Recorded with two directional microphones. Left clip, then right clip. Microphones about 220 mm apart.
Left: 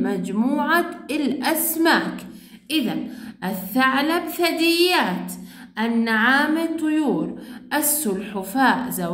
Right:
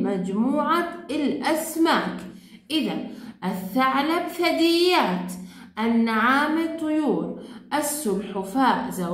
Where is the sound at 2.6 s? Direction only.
40° left (ahead or behind).